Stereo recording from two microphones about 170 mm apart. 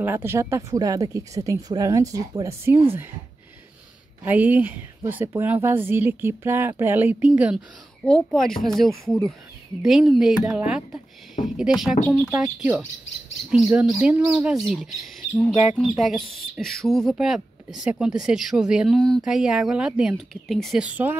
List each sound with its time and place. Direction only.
0.0 s speech: 15° right (ahead or behind)
4.2 s a woman's voice: 10° right (ahead or behind)
8.0 s speech: 5° left (ahead or behind)